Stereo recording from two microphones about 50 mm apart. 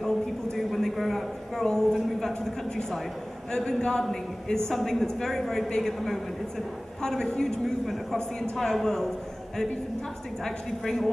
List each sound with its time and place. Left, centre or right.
0.6 s a man's voice: centre
10.4 s a man's voice: centre